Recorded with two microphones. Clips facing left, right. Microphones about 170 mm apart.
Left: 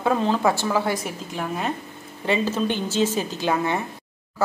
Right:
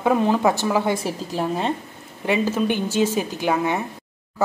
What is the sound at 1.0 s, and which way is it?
Speech, 30° right (ahead or behind).